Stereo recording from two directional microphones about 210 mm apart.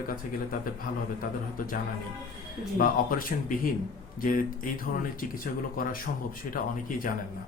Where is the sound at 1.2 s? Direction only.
40° left (ahead or behind).